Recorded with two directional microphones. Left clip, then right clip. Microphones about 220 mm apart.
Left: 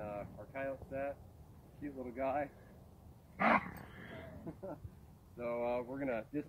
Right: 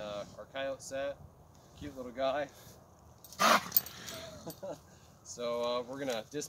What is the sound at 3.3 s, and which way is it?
Dog, 20° right (ahead or behind).